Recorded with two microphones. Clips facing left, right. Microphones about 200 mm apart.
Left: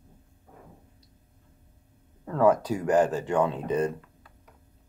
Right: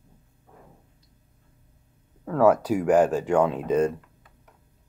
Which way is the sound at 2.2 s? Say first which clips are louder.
Right 2 dB; 5° right (ahead or behind).